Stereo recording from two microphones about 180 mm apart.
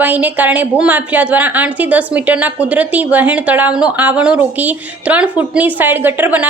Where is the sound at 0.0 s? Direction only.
10° right (ahead or behind).